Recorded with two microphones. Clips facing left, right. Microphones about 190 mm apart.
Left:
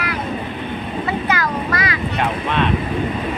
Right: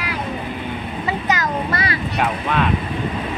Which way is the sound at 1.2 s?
20° right (ahead or behind).